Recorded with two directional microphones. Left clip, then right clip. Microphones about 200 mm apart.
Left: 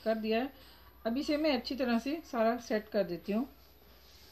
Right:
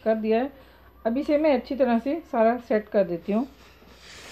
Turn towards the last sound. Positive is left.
turn(degrees=40)  # may be behind; listen again after turning